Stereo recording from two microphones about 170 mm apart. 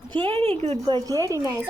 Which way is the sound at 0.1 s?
30° right (ahead or behind).